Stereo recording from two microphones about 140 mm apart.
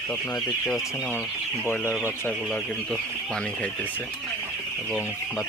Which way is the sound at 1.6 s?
15° left (ahead or behind).